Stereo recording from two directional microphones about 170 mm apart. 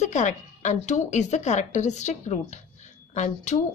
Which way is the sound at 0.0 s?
45° left (ahead or behind).